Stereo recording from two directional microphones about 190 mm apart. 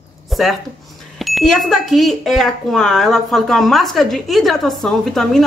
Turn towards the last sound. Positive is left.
turn(degrees=0)  # may be behind; listen again after turning